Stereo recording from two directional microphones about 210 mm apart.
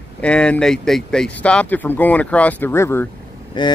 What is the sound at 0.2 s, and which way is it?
Speech, 5° left (ahead or behind).